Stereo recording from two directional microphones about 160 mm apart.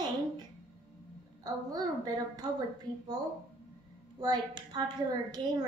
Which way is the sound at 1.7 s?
25° right (ahead or behind).